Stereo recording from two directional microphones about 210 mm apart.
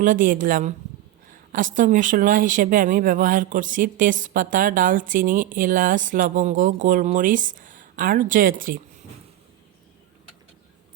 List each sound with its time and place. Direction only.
0.0 s speech: 40° right (ahead or behind)